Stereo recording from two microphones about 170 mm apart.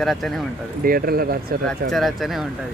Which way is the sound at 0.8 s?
60° right (ahead or behind).